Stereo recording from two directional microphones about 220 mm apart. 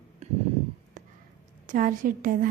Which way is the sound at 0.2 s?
30° right (ahead or behind).